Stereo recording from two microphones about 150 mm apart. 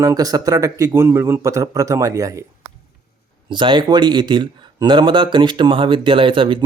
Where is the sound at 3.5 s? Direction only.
30° right (ahead or behind).